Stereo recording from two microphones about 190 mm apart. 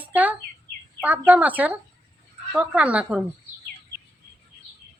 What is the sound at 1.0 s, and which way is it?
Speech, 10° right (ahead or behind).